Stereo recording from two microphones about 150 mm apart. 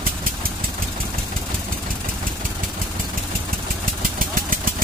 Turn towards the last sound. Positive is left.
turn(degrees=-70)  # may be behind; listen again after turning